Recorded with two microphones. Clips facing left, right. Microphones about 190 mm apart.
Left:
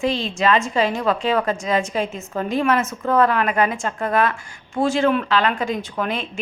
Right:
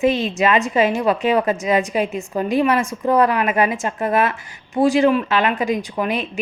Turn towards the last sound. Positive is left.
turn(degrees=-15)  # may be behind; listen again after turning